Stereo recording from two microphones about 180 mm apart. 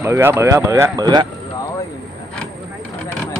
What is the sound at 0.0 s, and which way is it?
Speech, 10° right (ahead or behind).